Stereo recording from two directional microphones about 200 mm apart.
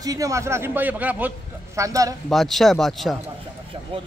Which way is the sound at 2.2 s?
Centre (ahead or behind).